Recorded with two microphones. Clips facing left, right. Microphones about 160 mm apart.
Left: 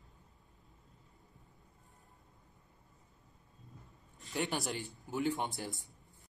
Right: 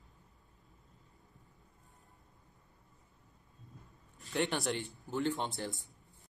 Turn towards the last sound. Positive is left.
turn(degrees=10)  # may be behind; listen again after turning